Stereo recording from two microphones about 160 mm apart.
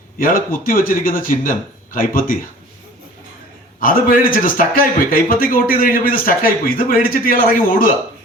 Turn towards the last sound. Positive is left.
turn(degrees=60)  # may be behind; listen again after turning